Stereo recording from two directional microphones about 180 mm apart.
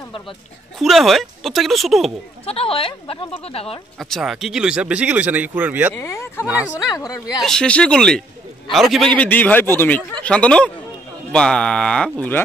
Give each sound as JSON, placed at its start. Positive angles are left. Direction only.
{"t": 0.7, "sound": "speech", "side_deg": 0}
{"t": 2.4, "sound": "speech", "side_deg": 30}
{"t": 4.0, "sound": "speech", "side_deg": 0}
{"t": 5.9, "sound": "a man's voice", "side_deg": 15}
{"t": 7.4, "sound": "a man's voice", "side_deg": 5}